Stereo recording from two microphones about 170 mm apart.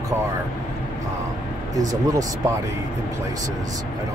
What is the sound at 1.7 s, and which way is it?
Speech, 20° right (ahead or behind).